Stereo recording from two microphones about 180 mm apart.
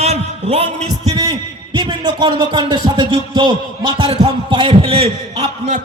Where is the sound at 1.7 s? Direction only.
25° right (ahead or behind).